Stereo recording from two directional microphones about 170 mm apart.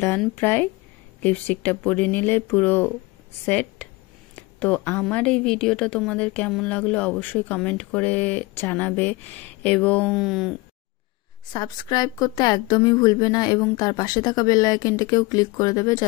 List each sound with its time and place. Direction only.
0.4 s speech: 10° left (ahead or behind)
11.5 s a woman's voice: 25° left (ahead or behind)